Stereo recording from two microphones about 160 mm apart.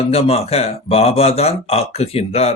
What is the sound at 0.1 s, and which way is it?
Speech, 40° left (ahead or behind).